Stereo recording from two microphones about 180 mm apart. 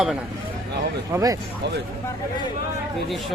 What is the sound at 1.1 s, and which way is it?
Speech, 20° right (ahead or behind).